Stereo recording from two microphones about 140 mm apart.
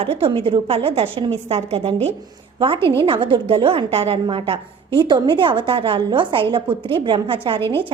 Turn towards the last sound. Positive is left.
turn(degrees=-40)  # may be behind; listen again after turning